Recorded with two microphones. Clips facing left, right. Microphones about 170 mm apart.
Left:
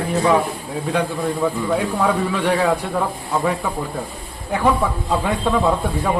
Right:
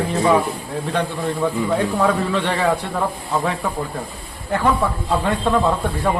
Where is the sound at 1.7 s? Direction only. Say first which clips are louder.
Right 1 dB; 5° left (ahead or behind).